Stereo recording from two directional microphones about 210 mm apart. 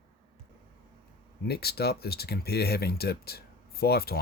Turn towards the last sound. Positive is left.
turn(degrees=50)  # may be behind; listen again after turning